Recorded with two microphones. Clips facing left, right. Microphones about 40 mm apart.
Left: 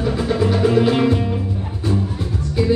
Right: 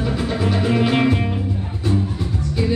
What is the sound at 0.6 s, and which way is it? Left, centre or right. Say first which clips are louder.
Music: left 3 dB; centre.